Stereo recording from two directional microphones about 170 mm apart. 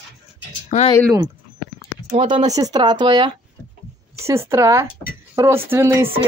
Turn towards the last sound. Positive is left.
turn(degrees=-15)  # may be behind; listen again after turning